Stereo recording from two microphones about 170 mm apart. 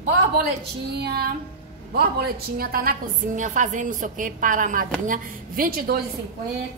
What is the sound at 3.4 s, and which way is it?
A woman's voice, 50° right (ahead or behind).